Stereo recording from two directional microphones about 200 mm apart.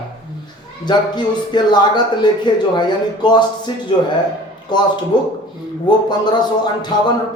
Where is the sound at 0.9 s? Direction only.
20° left (ahead or behind).